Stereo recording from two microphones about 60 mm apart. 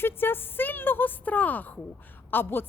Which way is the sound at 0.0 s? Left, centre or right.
Left.